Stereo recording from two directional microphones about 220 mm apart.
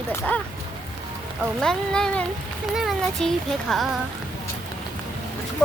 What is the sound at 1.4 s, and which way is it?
Speech, 5° left (ahead or behind).